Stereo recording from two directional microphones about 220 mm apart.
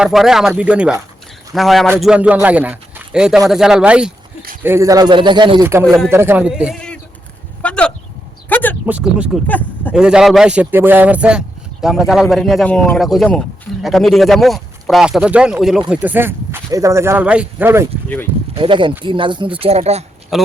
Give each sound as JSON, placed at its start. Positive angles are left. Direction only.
{"t": 0.0, "sound": "a man's voice", "side_deg": 0}
{"t": 8.9, "sound": "speech", "side_deg": -5}
{"t": 9.5, "sound": "speech", "side_deg": 10}
{"t": 9.9, "sound": "speech", "side_deg": -5}
{"t": 18.5, "sound": "a man's voice", "side_deg": -25}
{"t": 20.3, "sound": "speech", "side_deg": 0}